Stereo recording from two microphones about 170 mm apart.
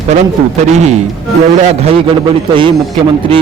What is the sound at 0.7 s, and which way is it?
A man's voice, 40° right (ahead or behind).